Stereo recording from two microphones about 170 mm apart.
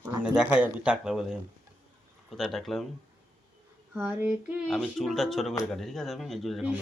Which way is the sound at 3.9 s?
10° right (ahead or behind).